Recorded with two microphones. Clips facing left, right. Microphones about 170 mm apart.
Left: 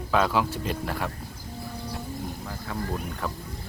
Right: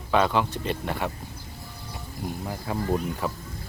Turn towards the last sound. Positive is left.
turn(degrees=-5)  # may be behind; listen again after turning